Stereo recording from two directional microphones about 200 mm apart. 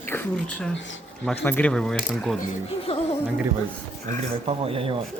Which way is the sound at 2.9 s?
30° left (ahead or behind).